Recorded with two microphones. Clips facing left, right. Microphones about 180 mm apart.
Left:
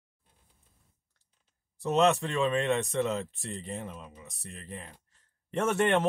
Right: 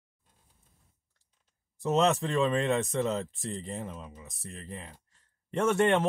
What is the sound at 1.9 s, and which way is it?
Speech, 35° right (ahead or behind).